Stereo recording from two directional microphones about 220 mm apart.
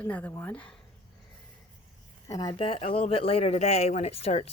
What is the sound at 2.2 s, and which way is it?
Speech, 15° left (ahead or behind).